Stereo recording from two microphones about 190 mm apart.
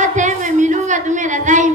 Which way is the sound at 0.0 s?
40° right (ahead or behind).